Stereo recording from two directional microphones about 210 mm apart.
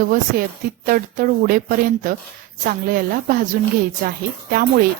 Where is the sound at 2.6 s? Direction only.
45° right (ahead or behind).